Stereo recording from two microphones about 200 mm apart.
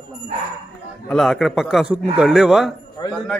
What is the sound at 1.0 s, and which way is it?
A man's voice, centre (ahead or behind).